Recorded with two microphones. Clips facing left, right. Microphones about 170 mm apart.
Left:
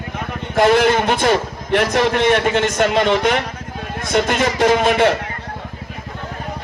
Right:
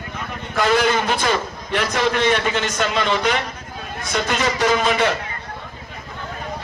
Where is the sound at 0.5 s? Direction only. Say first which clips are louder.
Left 5 dB; 55° left (ahead or behind).